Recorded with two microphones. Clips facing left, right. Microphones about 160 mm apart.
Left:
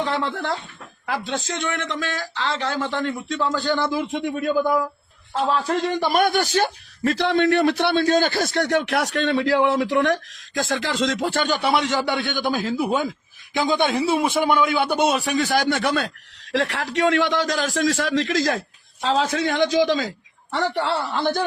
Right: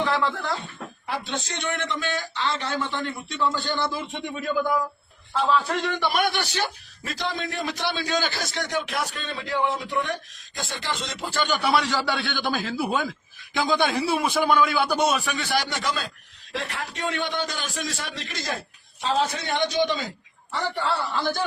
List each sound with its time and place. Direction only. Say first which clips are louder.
0.0 s chuckle: even; 20° left (ahead or behind)
1.0 s a man's voice: left 5 dB; 90° left
5.3 s a man's voice: left 2 dB; 40° left (ahead or behind); by 11.3 s 90° left
11.5 s a man's voice: right 1 dB; 25° left (ahead or behind); by 20.1 s 90° left
20.5 s speech: left 4 dB; 75° left (ahead or behind)
21.0 s a man's voice: left 4 dB; 65° left (ahead or behind)